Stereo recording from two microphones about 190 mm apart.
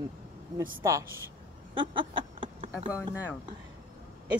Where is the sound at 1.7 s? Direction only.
25° right (ahead or behind).